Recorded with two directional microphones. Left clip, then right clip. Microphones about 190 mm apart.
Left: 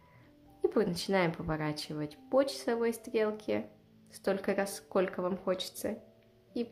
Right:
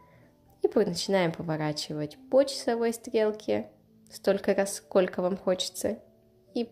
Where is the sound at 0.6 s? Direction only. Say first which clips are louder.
Right 5 dB; 15° right (ahead or behind).